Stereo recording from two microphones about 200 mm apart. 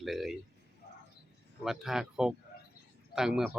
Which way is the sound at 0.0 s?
Centre (ahead or behind).